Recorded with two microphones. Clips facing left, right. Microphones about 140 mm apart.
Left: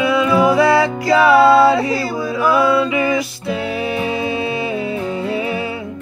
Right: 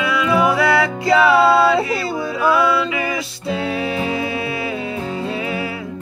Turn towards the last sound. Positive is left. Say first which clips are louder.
# left 3 dB
turn(degrees=25)  # may be behind; listen again after turning